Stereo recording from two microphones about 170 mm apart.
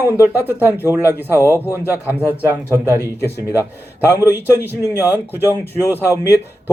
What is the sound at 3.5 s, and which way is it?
A man's voice, 10° right (ahead or behind).